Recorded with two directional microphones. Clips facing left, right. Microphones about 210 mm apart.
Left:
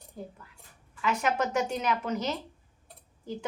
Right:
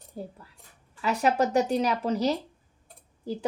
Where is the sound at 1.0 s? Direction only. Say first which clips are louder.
Right 4 dB; 35° right (ahead or behind).